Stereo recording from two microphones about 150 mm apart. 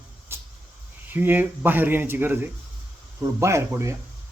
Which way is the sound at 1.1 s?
15° right (ahead or behind).